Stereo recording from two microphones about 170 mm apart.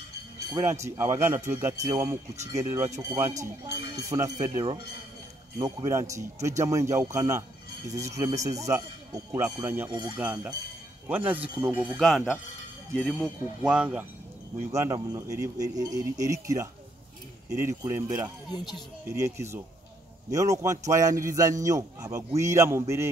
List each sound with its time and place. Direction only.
0.5 s speech: 20° right (ahead or behind)
10.2 s speech: 10° right (ahead or behind)
12.9 s speech: centre (ahead or behind); by 18.0 s 15° right (ahead or behind)
19.0 s speech: 15° right (ahead or behind)